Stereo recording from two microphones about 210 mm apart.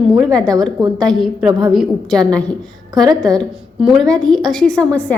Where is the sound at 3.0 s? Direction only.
20° right (ahead or behind).